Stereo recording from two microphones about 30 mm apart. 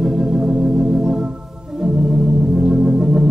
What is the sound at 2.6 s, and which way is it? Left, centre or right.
Organ, right.